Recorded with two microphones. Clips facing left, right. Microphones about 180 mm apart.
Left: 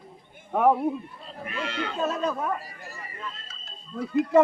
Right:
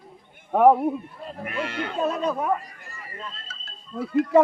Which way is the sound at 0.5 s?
10° right (ahead or behind).